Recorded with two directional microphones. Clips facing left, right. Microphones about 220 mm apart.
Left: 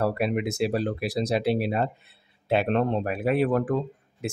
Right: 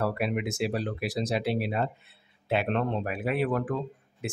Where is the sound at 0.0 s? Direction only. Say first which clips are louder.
Left 4 dB; 35° left (ahead or behind).